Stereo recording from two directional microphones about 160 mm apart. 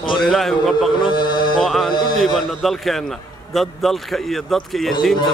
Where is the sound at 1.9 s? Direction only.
25° left (ahead or behind).